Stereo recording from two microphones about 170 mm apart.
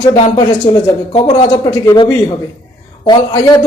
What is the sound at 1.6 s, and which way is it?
Speech, 20° left (ahead or behind).